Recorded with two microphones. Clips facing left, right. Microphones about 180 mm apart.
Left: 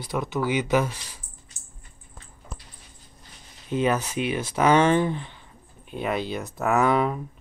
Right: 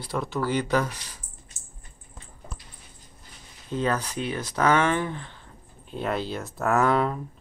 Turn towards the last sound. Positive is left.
turn(degrees=5)  # may be behind; listen again after turning